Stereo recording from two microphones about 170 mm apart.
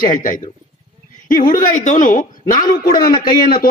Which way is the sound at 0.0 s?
50° left (ahead or behind).